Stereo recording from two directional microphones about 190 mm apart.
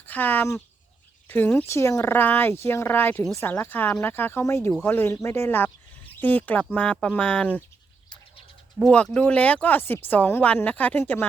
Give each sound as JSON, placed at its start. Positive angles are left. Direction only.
{"t": 0.0, "sound": "speech", "side_deg": 10}
{"t": 8.8, "sound": "speech", "side_deg": 5}